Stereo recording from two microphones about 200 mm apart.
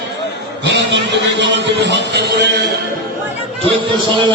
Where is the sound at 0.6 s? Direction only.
60° right (ahead or behind).